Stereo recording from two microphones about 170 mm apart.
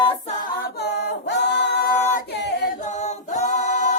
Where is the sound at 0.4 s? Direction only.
75° left (ahead or behind).